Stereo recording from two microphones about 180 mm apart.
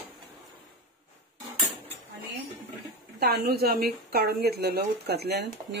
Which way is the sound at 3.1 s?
60° right (ahead or behind).